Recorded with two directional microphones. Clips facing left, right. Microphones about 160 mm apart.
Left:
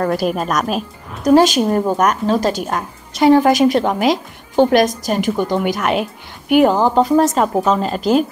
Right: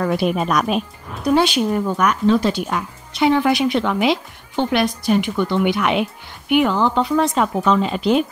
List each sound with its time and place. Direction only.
0.0 s a woman's voice: centre (ahead or behind)
1.2 s speech: 40° left (ahead or behind)